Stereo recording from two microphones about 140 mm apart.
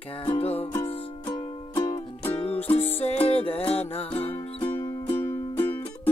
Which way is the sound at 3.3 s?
40° left (ahead or behind).